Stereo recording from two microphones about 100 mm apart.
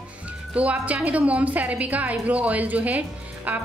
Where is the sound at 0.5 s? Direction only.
15° right (ahead or behind).